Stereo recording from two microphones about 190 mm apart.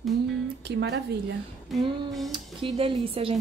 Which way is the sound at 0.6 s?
60° right (ahead or behind).